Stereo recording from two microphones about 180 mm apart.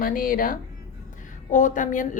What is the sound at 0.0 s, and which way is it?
Speech, 50° left (ahead or behind).